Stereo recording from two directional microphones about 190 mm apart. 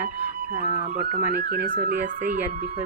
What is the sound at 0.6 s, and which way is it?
Speech, 35° right (ahead or behind).